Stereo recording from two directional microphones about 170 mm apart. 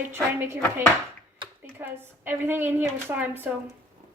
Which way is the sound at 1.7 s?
10° right (ahead or behind).